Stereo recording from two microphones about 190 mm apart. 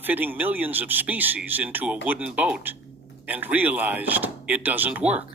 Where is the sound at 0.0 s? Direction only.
10° right (ahead or behind).